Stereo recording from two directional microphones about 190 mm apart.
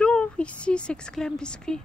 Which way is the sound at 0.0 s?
5° left (ahead or behind).